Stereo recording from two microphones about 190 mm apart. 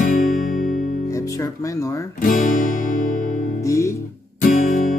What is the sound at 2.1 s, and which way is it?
Music, 45° left (ahead or behind).